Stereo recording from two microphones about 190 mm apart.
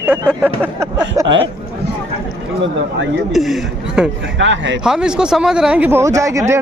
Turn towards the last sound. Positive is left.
turn(degrees=-15)  # may be behind; listen again after turning